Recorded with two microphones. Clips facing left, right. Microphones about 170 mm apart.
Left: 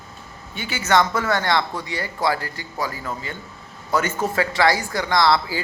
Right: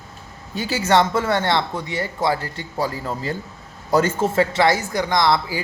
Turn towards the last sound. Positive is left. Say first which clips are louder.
# even
turn(degrees=-20)  # may be behind; listen again after turning